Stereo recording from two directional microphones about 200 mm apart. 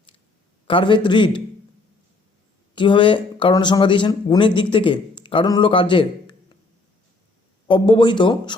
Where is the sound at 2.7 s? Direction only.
25° left (ahead or behind).